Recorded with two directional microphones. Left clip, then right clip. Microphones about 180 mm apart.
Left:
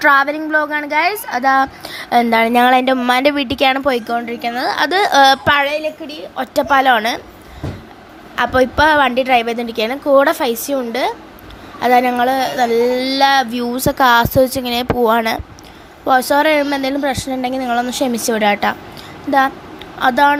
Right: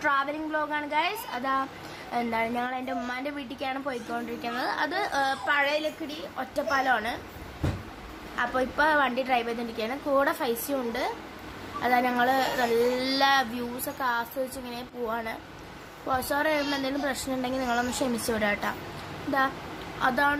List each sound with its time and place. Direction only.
0.0 s a woman's voice: 40° left (ahead or behind)
2.1 s a woman's voice: 50° left (ahead or behind)
8.4 s a woman's voice: 40° left (ahead or behind)
14.0 s speech: 55° left (ahead or behind)
16.0 s a woman's voice: 45° left (ahead or behind)
20.0 s a woman's voice: 40° left (ahead or behind)